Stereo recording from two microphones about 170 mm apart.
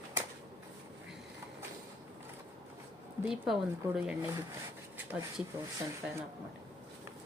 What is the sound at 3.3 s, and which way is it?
Speech, 5° right (ahead or behind).